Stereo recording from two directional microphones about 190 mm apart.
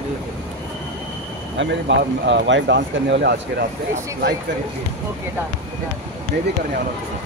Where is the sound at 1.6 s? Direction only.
70° right (ahead or behind).